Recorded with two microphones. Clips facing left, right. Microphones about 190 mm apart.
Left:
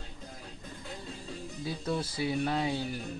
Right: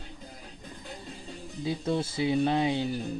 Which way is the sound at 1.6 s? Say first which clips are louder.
Right 5 dB; 20° right (ahead or behind).